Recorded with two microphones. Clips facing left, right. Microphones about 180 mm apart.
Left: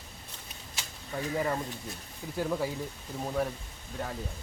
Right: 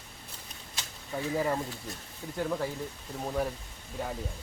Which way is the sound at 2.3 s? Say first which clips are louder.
Left 1 dB; 5° left (ahead or behind).